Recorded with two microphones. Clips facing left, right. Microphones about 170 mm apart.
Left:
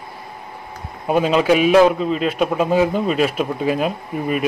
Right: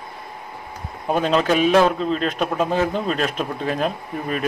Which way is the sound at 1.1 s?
5° left (ahead or behind).